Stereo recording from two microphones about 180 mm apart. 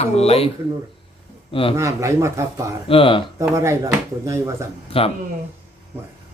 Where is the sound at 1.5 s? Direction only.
30° left (ahead or behind).